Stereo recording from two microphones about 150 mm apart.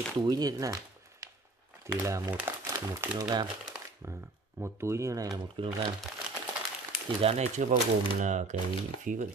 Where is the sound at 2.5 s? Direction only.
15° right (ahead or behind).